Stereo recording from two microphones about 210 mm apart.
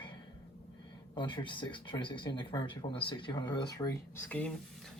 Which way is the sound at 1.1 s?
20° left (ahead or behind).